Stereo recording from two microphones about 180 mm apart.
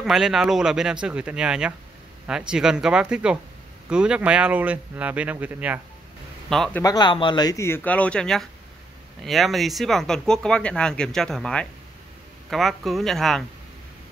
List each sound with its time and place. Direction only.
0.0 s speech: centre (ahead or behind)
6.5 s speech: centre (ahead or behind)
6.8 s speech: 20° left (ahead or behind); by 13.4 s centre (ahead or behind)